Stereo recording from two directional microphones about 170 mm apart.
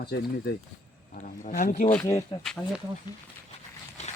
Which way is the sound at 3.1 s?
25° left (ahead or behind).